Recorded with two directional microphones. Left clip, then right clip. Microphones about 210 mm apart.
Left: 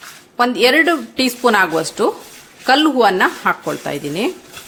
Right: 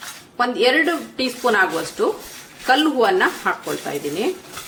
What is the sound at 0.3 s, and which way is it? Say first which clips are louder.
A woman's voice: left 4 dB; 50° left (ahead or behind).